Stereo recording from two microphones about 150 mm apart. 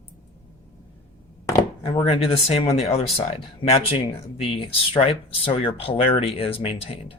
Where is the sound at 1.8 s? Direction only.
40° left (ahead or behind).